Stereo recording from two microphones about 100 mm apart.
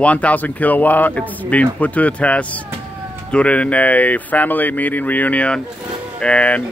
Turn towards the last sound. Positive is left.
turn(degrees=15)  # may be behind; listen again after turning